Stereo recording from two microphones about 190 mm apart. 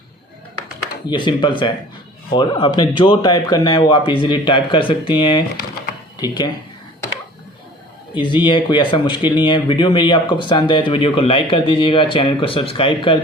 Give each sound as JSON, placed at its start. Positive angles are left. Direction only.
{"t": 1.1, "sound": "speech", "side_deg": 25}
{"t": 8.1, "sound": "speech", "side_deg": 25}